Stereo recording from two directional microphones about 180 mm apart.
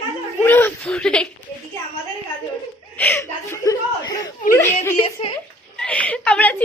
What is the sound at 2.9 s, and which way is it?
Chuckle, 10° left (ahead or behind).